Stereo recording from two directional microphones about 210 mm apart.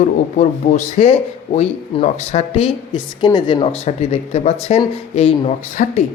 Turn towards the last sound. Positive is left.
turn(degrees=35)  # may be behind; listen again after turning